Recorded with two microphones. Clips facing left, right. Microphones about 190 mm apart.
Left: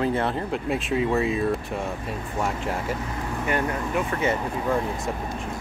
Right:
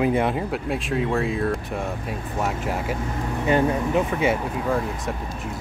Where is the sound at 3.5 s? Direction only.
25° right (ahead or behind).